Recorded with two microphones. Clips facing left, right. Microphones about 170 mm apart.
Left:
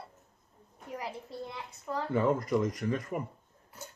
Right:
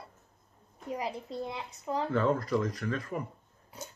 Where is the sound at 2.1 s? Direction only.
15° left (ahead or behind).